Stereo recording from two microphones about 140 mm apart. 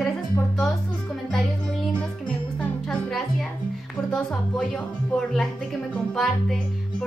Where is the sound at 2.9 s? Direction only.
Centre (ahead or behind).